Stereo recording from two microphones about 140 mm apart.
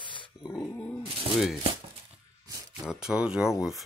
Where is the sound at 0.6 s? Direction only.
15° left (ahead or behind).